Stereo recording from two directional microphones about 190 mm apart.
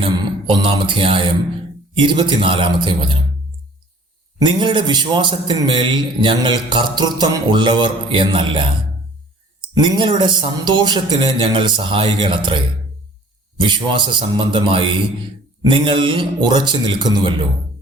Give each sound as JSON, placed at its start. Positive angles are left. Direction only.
{"t": 0.0, "sound": "mantra", "side_deg": -25}
{"t": 2.0, "sound": "a man's voice", "side_deg": -25}
{"t": 4.4, "sound": "a man's voice", "side_deg": -25}
{"t": 9.7, "sound": "a man's voice", "side_deg": -25}